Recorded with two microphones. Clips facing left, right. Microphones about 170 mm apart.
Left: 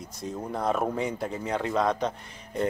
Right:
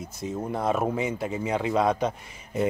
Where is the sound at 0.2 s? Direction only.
5° right (ahead or behind).